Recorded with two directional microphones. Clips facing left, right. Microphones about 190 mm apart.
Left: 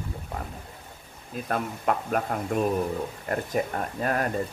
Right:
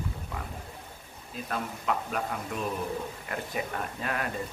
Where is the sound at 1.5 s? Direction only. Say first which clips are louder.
Left 5 dB; 50° left (ahead or behind).